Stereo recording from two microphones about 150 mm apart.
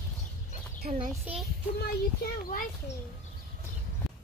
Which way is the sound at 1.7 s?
75° left (ahead or behind).